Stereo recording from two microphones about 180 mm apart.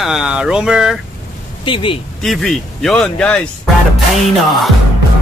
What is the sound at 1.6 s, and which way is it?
Speech, 30° left (ahead or behind).